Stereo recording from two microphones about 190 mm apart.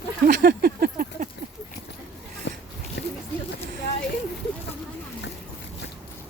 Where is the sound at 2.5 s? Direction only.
65° left (ahead or behind).